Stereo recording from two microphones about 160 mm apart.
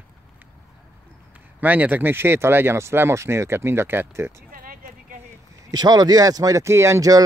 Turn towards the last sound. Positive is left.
turn(degrees=-20)  # may be behind; listen again after turning